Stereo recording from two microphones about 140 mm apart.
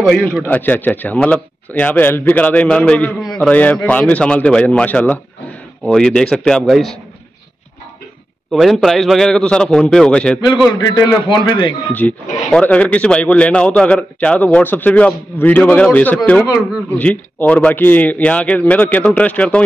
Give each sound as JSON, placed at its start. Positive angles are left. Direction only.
{"t": 0.0, "sound": "a man's voice", "side_deg": 5}
{"t": 8.5, "sound": "a man's voice", "side_deg": 0}
{"t": 10.7, "sound": "a man's voice", "side_deg": 25}
{"t": 11.9, "sound": "speech", "side_deg": 10}